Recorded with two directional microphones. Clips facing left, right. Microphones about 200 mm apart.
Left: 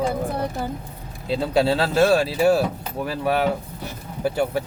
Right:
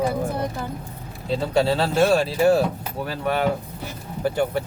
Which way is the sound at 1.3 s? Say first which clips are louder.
Left 1 dB; centre (ahead or behind).